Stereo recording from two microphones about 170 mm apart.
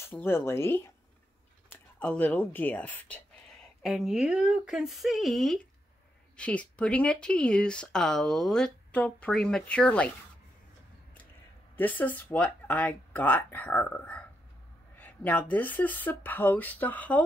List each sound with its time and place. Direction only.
0.0 s speech: 15° left (ahead or behind)
3.8 s speech: centre (ahead or behind)
11.7 s speech: 10° left (ahead or behind)